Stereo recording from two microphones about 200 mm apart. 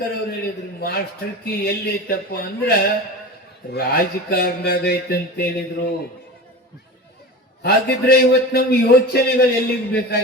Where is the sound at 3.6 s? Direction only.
50° left (ahead or behind).